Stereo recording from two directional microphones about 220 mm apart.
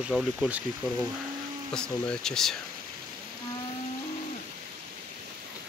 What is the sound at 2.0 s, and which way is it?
Speech, 5° left (ahead or behind).